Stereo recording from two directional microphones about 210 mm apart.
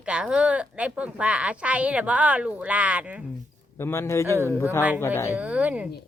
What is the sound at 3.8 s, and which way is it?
Speech, 10° left (ahead or behind).